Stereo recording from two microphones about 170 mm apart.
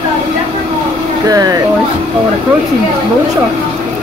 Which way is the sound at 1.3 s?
20° right (ahead or behind).